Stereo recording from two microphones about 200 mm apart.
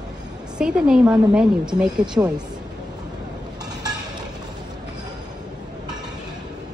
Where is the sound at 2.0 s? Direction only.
20° right (ahead or behind).